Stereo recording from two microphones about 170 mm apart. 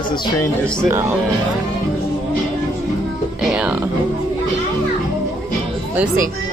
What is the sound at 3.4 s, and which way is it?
Music, 5° right (ahead or behind).